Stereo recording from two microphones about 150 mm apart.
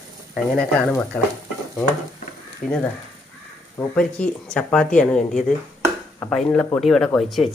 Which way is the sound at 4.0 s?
5° left (ahead or behind).